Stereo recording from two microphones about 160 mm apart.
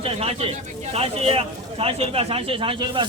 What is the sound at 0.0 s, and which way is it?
Speech, 40° right (ahead or behind).